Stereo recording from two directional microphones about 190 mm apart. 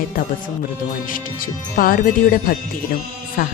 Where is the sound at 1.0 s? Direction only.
45° left (ahead or behind).